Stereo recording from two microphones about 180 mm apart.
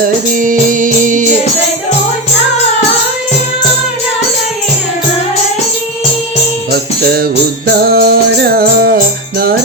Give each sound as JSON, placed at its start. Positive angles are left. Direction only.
{"t": 0.3, "sound": "music", "side_deg": -45}
{"t": 7.0, "sound": "music", "side_deg": -60}